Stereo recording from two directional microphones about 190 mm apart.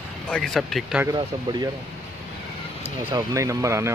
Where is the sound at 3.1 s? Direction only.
15° right (ahead or behind).